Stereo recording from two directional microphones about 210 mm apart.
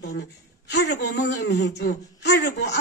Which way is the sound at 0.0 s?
55° left (ahead or behind).